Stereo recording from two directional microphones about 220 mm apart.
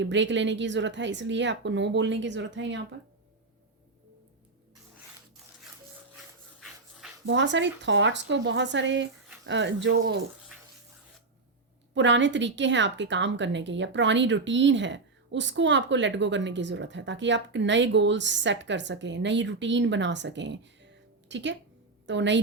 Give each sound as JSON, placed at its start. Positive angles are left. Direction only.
{"t": 0.0, "sound": "speech", "side_deg": -55}
{"t": 6.1, "sound": "dog", "side_deg": 0}
{"t": 7.3, "sound": "speech", "side_deg": -55}
{"t": 11.9, "sound": "a woman's voice", "side_deg": -55}